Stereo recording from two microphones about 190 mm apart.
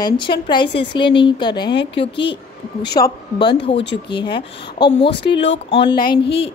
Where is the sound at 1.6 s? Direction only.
60° left (ahead or behind).